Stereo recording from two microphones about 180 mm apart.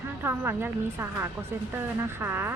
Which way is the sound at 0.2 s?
10° right (ahead or behind).